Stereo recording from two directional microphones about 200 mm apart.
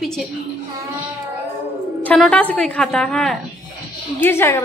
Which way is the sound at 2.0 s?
5° left (ahead or behind).